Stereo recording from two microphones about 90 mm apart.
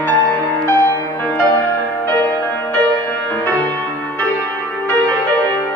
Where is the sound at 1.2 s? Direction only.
25° left (ahead or behind).